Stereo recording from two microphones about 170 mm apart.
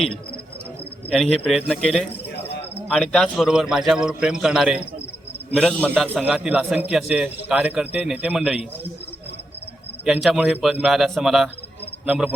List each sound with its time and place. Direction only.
1.1 s a man's voice: centre (ahead or behind)
2.3 s a sound: 80° left
2.9 s a man's voice: 5° left (ahead or behind)
5.9 s a man's voice: 5° right (ahead or behind)
10.0 s a man's voice: 5° right (ahead or behind)